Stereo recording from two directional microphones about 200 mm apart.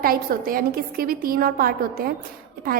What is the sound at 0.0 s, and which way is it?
A woman's voice, 45° right (ahead or behind).